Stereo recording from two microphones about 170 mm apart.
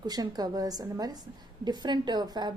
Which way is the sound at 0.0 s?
25° right (ahead or behind).